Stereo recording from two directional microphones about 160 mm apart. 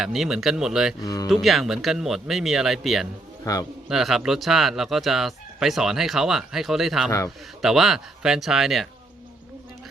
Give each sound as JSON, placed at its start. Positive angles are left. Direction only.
{"t": 0.0, "sound": "speech", "side_deg": 0}
{"t": 1.0, "sound": "speech", "side_deg": 20}
{"t": 1.3, "sound": "speech", "side_deg": 0}
{"t": 3.4, "sound": "a man's voice", "side_deg": 20}
{"t": 3.8, "sound": "speech", "side_deg": -5}